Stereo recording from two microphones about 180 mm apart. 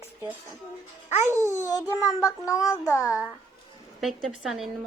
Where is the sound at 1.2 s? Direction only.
15° right (ahead or behind).